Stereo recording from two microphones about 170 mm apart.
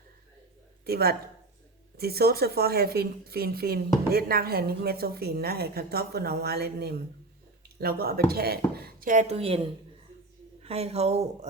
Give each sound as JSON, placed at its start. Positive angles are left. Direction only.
{"t": 0.9, "sound": "a woman's voice", "side_deg": -65}
{"t": 10.6, "sound": "speech", "side_deg": -35}